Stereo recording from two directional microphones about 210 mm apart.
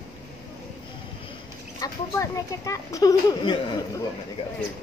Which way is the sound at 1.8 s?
15° left (ahead or behind).